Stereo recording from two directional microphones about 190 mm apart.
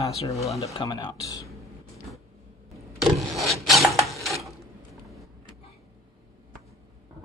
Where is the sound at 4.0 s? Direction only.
Centre (ahead or behind).